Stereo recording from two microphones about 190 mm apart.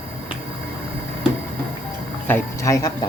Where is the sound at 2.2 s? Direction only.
15° left (ahead or behind).